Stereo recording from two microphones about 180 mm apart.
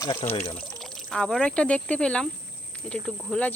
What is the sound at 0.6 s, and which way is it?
Pour, centre (ahead or behind).